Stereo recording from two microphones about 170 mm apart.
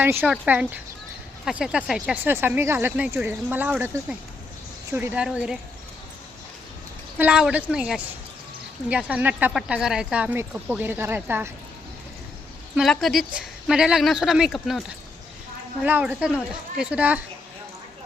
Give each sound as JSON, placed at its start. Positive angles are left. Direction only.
{"t": 0.0, "sound": "speech", "side_deg": -10}
{"t": 7.2, "sound": "a woman's voice", "side_deg": -5}
{"t": 12.7, "sound": "a woman's voice", "side_deg": 0}
{"t": 15.8, "sound": "speech", "side_deg": -10}